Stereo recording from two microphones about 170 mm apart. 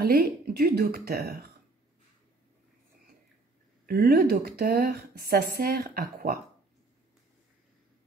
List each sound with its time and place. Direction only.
0.0 s speech: 65° right (ahead or behind)
3.8 s speech: 65° right (ahead or behind)